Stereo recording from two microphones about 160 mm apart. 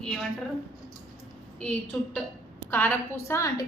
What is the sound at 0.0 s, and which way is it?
Speech, 5° left (ahead or behind).